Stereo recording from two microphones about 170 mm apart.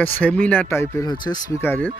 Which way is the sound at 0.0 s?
10° left (ahead or behind).